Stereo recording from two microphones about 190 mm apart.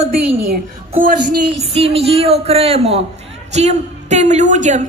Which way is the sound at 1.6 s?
30° right (ahead or behind).